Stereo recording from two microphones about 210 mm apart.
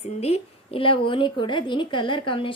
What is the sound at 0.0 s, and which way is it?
A woman's voice, 30° left (ahead or behind).